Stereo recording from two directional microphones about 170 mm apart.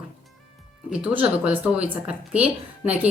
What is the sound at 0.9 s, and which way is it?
A woman's voice, 5° right (ahead or behind).